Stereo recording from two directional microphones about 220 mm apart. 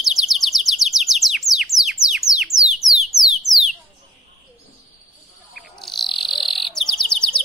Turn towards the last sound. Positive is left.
turn(degrees=0)  # may be behind; listen again after turning